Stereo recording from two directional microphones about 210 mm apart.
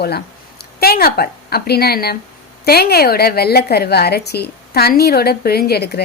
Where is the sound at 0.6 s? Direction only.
45° left (ahead or behind).